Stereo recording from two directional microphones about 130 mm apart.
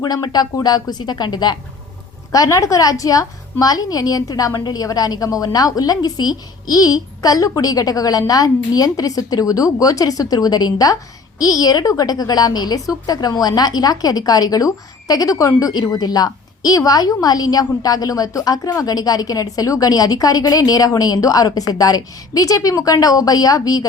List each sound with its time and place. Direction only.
0.0 s a woman's voice: 30° left (ahead or behind)